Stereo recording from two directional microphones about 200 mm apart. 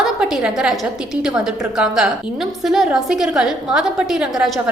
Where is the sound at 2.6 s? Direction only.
Centre (ahead or behind).